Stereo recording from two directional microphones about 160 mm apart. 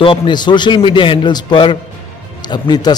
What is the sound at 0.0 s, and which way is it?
A man's voice, 35° left (ahead or behind).